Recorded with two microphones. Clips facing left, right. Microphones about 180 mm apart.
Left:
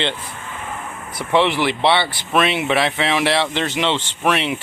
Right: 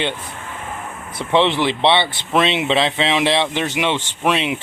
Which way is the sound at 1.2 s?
20° right (ahead or behind).